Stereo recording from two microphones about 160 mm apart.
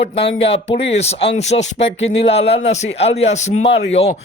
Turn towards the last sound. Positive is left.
turn(degrees=40)  # may be behind; listen again after turning